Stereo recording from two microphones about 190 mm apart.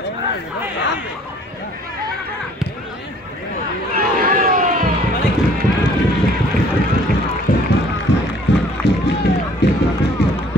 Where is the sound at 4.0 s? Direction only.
45° right (ahead or behind).